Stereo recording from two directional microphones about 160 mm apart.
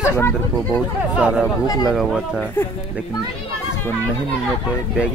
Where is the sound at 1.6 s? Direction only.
25° left (ahead or behind).